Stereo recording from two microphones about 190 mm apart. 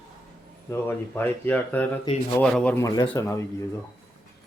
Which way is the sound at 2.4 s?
5° left (ahead or behind).